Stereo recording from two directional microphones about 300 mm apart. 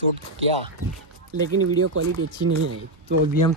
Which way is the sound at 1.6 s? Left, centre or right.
Right.